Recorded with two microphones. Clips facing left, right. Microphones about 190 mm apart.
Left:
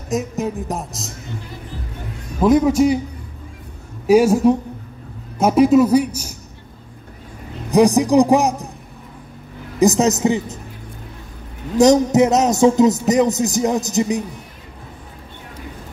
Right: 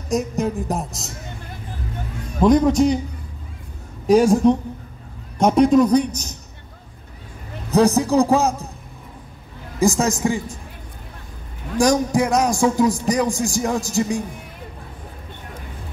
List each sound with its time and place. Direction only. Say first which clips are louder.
0.1 s a man's voice: right 1 dB; centre (ahead or behind)
2.4 s a man's voice: left 1 dB; 5° left (ahead or behind)
4.1 s a man's voice: left 1 dB; 5° left (ahead or behind)
7.7 s a man's voice: left 3 dB; 15° left (ahead or behind)
9.8 s a man's voice: left 4 dB; 20° left (ahead or behind)
11.7 s a man's voice: left 5 dB; 20° left (ahead or behind)